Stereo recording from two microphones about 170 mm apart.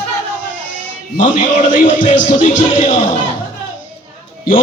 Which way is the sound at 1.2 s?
50° left (ahead or behind).